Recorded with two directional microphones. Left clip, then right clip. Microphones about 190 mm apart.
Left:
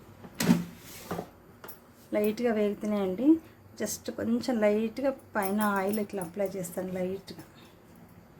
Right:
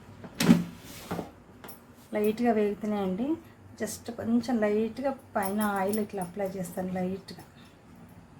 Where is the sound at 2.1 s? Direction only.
50° left (ahead or behind).